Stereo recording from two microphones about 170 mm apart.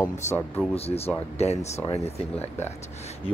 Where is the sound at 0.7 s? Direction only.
35° left (ahead or behind).